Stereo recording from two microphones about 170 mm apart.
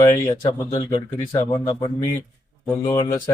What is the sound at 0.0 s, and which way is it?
Speech, 20° left (ahead or behind).